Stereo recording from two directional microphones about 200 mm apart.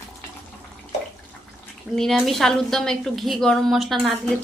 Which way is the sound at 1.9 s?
Centre (ahead or behind).